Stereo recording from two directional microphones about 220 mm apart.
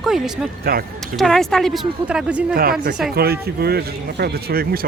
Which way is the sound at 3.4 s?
45° right (ahead or behind).